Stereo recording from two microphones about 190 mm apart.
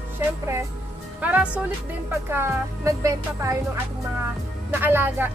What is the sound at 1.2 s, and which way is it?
Speech, 5° right (ahead or behind).